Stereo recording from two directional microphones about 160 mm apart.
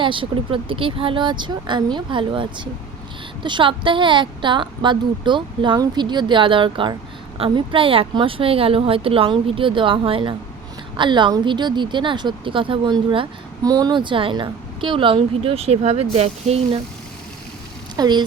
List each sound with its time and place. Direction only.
0.0 s a woman's voice: 30° right (ahead or behind)
17.9 s speech: 25° right (ahead or behind)